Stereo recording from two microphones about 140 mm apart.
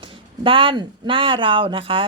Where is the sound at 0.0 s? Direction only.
40° right (ahead or behind).